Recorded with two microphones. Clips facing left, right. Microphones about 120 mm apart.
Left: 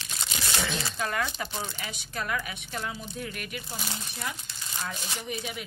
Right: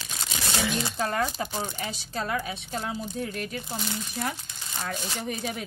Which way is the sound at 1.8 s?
30° right (ahead or behind).